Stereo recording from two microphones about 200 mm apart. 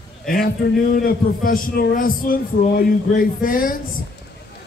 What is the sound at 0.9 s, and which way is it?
Music, 45° left (ahead or behind).